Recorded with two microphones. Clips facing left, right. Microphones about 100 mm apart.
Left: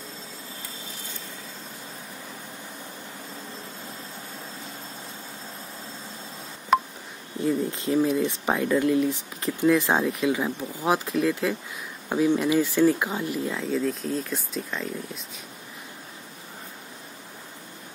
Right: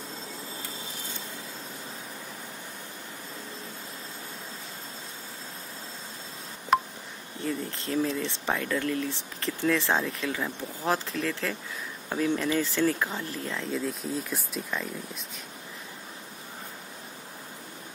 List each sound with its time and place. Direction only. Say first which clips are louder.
7.4 s speech: left 7 dB; 20° left (ahead or behind)
13.6 s speech: left 5 dB; centre (ahead or behind)